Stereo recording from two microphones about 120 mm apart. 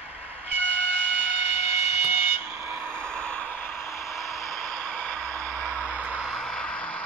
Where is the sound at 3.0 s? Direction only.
5° left (ahead or behind).